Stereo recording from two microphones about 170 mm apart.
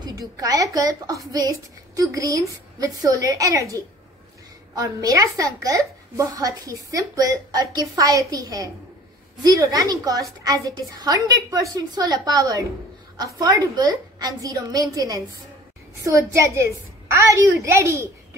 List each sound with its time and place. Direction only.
0.0 s a woman's voice: 20° right (ahead or behind)